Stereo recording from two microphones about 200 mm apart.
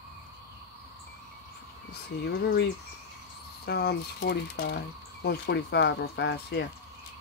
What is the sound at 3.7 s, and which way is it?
Speech, 55° left (ahead or behind).